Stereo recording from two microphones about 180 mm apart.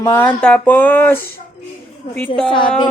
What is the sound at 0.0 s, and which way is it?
Speech, 15° left (ahead or behind).